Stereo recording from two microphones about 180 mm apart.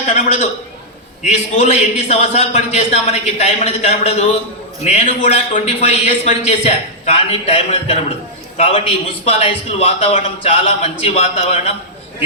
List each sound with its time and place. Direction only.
0.1 s a man's voice: 40° left (ahead or behind)